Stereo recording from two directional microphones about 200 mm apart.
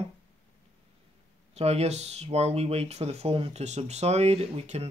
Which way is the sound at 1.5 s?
30° right (ahead or behind).